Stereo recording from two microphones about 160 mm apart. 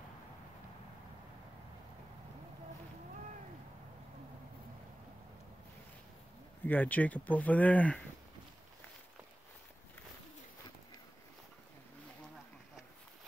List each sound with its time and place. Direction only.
6.6 s speech: 10° left (ahead or behind)